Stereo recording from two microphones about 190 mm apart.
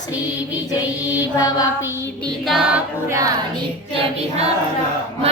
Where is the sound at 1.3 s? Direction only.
20° left (ahead or behind).